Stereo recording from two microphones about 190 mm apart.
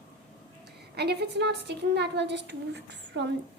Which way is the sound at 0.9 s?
60° right (ahead or behind).